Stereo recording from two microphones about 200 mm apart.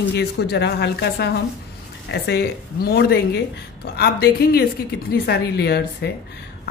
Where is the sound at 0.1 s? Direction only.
55° left (ahead or behind).